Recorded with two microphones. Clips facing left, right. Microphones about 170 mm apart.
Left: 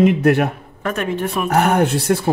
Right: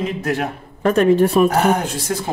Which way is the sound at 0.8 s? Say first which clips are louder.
Right 8 dB; 35° right (ahead or behind).